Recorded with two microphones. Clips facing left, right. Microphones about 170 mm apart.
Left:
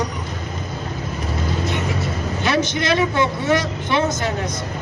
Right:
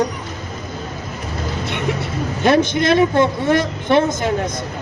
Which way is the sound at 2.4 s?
50° right (ahead or behind).